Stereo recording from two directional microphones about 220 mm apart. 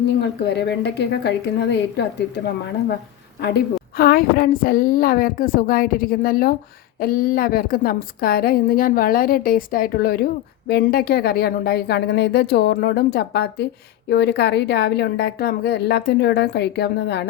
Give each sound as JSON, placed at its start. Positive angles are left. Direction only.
{"t": 0.2, "sound": "a woman's voice", "side_deg": 50}
{"t": 3.9, "sound": "a woman's voice", "side_deg": 45}